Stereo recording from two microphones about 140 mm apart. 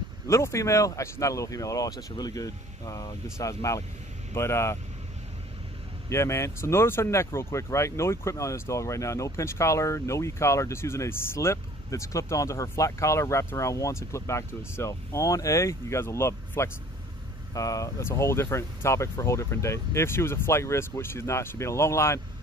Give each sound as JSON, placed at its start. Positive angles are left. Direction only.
{"t": 0.3, "sound": "speech", "side_deg": 20}
{"t": 6.0, "sound": "speech", "side_deg": 20}